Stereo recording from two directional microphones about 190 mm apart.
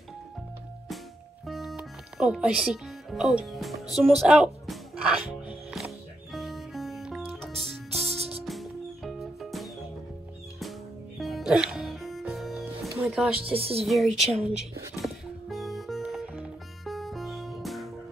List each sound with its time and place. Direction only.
1.4 s music: centre (ahead or behind)
11.1 s music: centre (ahead or behind)
13.5 s speech: 30° right (ahead or behind)
13.8 s music: centre (ahead or behind)